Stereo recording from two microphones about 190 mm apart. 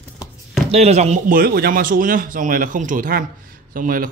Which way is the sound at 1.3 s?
50° right (ahead or behind).